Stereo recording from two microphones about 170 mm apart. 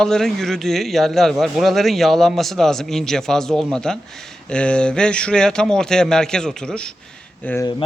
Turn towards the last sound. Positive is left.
turn(degrees=10)  # may be behind; listen again after turning